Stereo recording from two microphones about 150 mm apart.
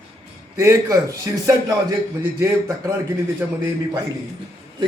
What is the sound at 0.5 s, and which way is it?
A man's voice, 20° right (ahead or behind).